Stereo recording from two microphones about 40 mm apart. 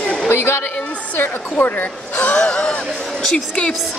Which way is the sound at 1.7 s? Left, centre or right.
Left.